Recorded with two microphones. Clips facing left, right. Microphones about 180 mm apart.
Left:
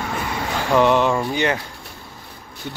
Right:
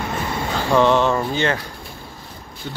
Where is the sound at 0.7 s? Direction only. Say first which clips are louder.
Even; 15° left (ahead or behind).